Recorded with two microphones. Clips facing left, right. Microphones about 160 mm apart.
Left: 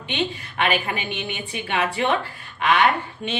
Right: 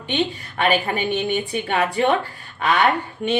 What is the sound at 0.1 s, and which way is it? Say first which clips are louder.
A woman's voice: right 3 dB; 40° right (ahead or behind).